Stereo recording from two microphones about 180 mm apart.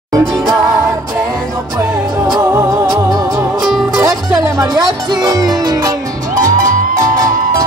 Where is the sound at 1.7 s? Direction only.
20° right (ahead or behind).